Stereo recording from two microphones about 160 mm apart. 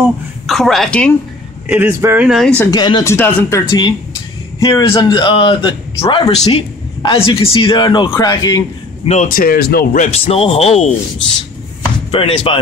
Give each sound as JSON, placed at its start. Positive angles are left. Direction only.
{"t": 0.5, "sound": "speech", "side_deg": 0}
{"t": 1.7, "sound": "speech", "side_deg": -15}
{"t": 2.2, "sound": "speech", "side_deg": 0}
{"t": 2.7, "sound": "a man's voice", "side_deg": 25}
{"t": 9.0, "sound": "a man's voice", "side_deg": 45}
{"t": 9.3, "sound": "speech", "side_deg": 65}
{"t": 10.0, "sound": "a man's voice", "side_deg": 40}
{"t": 12.1, "sound": "a man's voice", "side_deg": 35}